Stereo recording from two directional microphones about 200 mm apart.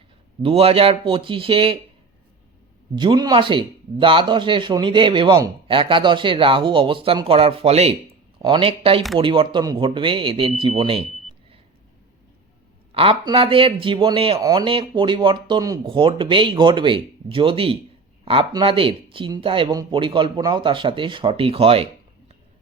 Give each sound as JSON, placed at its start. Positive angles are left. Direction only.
{"t": 0.4, "sound": "speech", "side_deg": -30}
{"t": 2.9, "sound": "speech", "side_deg": -25}
{"t": 12.9, "sound": "speech", "side_deg": -30}